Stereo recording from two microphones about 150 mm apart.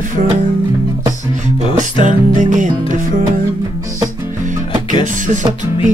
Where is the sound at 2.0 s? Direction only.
55° right (ahead or behind).